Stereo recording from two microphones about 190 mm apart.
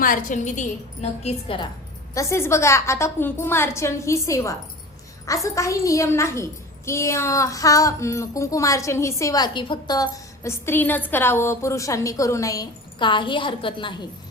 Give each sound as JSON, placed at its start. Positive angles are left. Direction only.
{"t": 0.0, "sound": "a woman's voice", "side_deg": 45}
{"t": 1.2, "sound": "a woman's voice", "side_deg": 30}
{"t": 2.1, "sound": "a woman's voice", "side_deg": 15}